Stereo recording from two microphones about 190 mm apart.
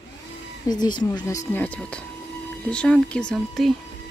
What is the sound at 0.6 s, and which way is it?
Speech, 20° left (ahead or behind).